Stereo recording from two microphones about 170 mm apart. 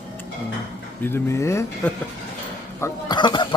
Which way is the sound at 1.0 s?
15° left (ahead or behind).